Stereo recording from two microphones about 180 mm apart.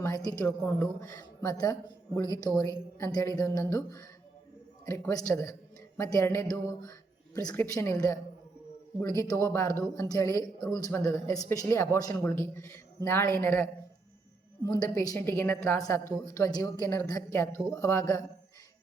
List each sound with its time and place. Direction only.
0.0 s a woman's voice: 20° left (ahead or behind)
4.9 s a woman's voice: 15° left (ahead or behind)
14.7 s a woman's voice: 20° left (ahead or behind)